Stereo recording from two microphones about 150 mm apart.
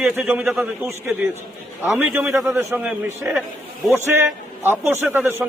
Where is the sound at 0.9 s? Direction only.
15° right (ahead or behind).